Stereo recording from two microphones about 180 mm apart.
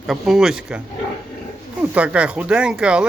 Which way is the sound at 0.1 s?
Centre (ahead or behind).